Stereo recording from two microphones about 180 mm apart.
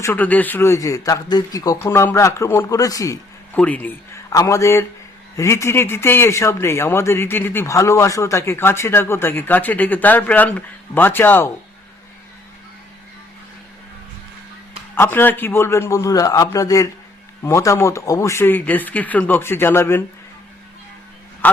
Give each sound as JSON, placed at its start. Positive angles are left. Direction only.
{"t": 0.0, "sound": "a man's voice", "side_deg": 10}
{"t": 14.9, "sound": "a man's voice", "side_deg": 10}
{"t": 21.4, "sound": "a man's voice", "side_deg": 10}